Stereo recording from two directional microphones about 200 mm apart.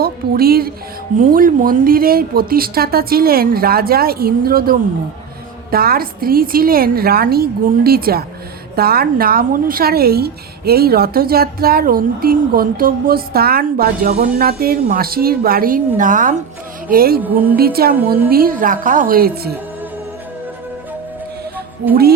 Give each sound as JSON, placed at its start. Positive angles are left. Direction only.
{"t": 0.0, "sound": "speech", "side_deg": -50}
{"t": 17.2, "sound": "speech", "side_deg": -10}
{"t": 17.6, "sound": "speech", "side_deg": -50}